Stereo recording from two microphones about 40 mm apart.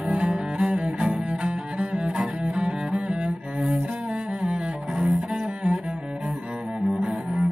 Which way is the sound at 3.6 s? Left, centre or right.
Right.